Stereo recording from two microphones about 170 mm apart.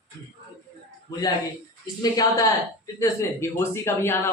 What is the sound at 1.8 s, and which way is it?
A man's voice, 20° left (ahead or behind).